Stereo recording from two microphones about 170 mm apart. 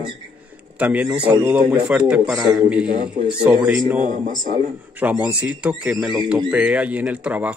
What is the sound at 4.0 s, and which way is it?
Speech, 50° right (ahead or behind).